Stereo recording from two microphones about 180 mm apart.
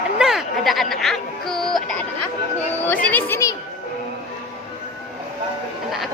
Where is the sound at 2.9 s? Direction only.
10° left (ahead or behind).